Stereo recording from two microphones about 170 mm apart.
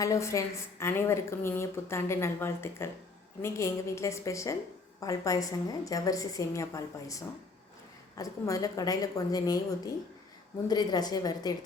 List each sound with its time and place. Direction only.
0.0 s a woman's voice: 15° left (ahead or behind)